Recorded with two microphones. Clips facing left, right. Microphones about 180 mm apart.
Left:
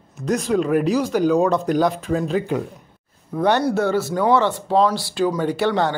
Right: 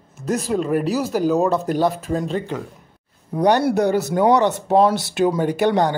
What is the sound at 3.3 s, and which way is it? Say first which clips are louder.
Speech: right 2 dB; 15° right (ahead or behind).